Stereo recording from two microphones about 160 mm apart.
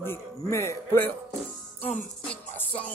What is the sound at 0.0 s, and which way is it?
A man's voice, 15° left (ahead or behind).